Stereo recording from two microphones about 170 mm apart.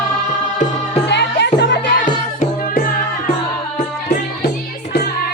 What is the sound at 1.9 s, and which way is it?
Music, 50° left (ahead or behind).